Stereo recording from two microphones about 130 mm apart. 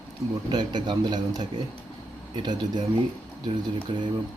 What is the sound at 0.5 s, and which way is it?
Speech, 35° right (ahead or behind).